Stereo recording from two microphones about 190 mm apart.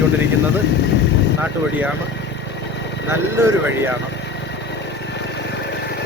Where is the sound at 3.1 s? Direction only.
15° right (ahead or behind).